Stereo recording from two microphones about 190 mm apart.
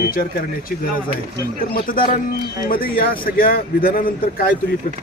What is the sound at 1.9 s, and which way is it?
Speech, 50° left (ahead or behind).